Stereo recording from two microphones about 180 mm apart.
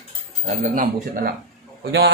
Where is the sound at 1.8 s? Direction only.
70° right (ahead or behind).